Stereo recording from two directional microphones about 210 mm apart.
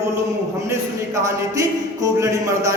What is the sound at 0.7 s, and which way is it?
A man's voice, 15° right (ahead or behind).